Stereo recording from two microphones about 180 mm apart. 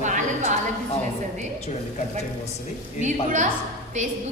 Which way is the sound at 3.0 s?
45° right (ahead or behind).